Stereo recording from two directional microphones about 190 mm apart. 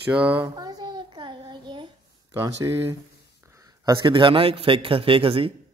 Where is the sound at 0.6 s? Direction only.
20° right (ahead or behind).